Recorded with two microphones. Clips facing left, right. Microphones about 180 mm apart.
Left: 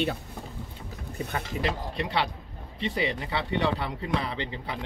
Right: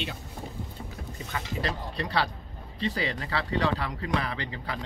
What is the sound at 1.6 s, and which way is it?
Speech, 20° left (ahead or behind).